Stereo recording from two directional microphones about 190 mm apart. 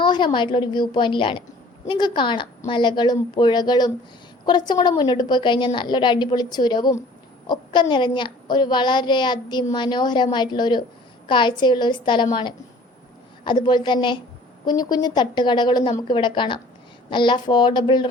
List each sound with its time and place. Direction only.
0.0 s a child's voice: 25° left (ahead or behind)